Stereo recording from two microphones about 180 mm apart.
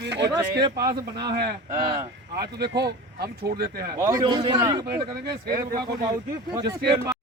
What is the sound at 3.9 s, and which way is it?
A man's voice, 15° right (ahead or behind).